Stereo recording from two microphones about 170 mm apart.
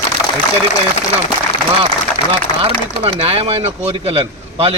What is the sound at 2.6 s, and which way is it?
Speech, 35° right (ahead or behind).